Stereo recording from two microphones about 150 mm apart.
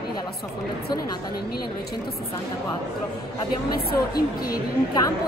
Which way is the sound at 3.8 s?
90° left.